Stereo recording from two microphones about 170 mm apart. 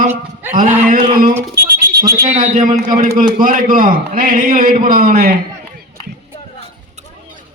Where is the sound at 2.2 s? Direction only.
45° right (ahead or behind); by 5.3 s 65° right (ahead or behind).